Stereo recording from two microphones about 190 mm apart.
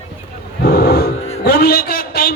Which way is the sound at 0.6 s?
55° left (ahead or behind).